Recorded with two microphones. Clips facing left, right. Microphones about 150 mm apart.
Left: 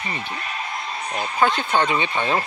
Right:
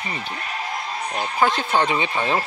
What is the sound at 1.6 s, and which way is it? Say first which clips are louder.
Speech: even; 5° right (ahead or behind).